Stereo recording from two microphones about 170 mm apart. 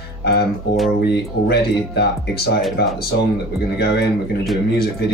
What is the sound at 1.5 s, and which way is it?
Speech, 75° left (ahead or behind).